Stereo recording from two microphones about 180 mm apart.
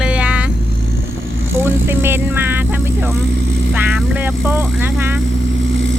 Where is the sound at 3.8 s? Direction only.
10° right (ahead or behind).